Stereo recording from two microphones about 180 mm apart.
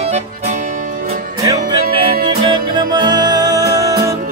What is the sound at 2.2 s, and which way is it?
Music, 25° right (ahead or behind).